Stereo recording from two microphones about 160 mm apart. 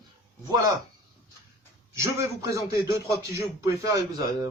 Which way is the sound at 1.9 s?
20° right (ahead or behind).